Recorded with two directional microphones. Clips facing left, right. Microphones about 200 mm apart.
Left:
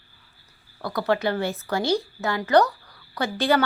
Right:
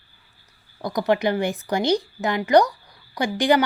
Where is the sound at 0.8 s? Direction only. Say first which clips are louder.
Right 3 dB; 15° right (ahead or behind).